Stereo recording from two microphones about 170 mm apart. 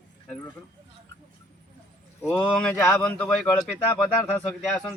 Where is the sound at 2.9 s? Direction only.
5° left (ahead or behind).